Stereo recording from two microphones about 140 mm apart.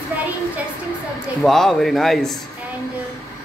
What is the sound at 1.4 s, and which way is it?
Speech, centre (ahead or behind).